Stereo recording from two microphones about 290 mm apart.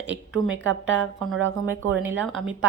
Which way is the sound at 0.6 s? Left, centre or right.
Right.